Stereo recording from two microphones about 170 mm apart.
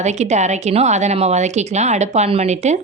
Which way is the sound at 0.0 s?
45° right (ahead or behind).